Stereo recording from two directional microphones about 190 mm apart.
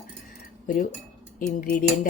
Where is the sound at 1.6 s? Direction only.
45° left (ahead or behind).